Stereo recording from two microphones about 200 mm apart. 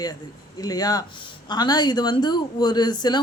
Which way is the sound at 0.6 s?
20° left (ahead or behind).